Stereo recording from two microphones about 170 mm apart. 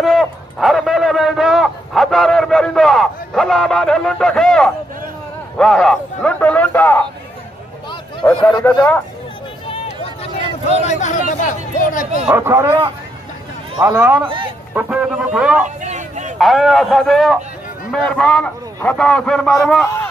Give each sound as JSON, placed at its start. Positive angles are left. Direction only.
{"t": 0.0, "sound": "a man's voice", "side_deg": 0}
{"t": 8.2, "sound": "a man's voice", "side_deg": 15}
{"t": 10.9, "sound": "speech", "side_deg": 45}
{"t": 12.3, "sound": "speech", "side_deg": -15}
{"t": 14.2, "sound": "a man's voice", "side_deg": -30}
{"t": 14.7, "sound": "speech", "side_deg": -5}
{"t": 15.8, "sound": "a sound", "side_deg": -45}
{"t": 16.3, "sound": "a man's voice", "side_deg": 0}